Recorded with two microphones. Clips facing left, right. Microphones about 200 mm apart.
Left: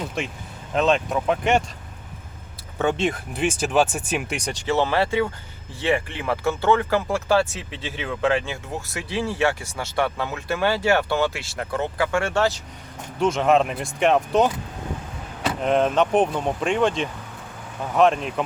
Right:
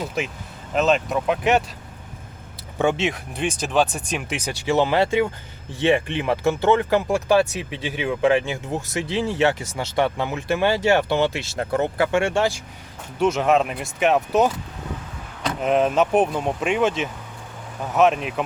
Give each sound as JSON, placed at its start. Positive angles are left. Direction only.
{"t": 0.7, "sound": "speech", "side_deg": -5}
{"t": 2.7, "sound": "speech", "side_deg": -10}
{"t": 3.1, "sound": "speech", "side_deg": 0}
{"t": 13.1, "sound": "speech", "side_deg": -5}